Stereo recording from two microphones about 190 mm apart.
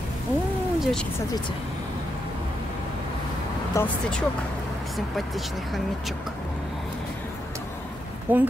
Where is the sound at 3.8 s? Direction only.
15° left (ahead or behind).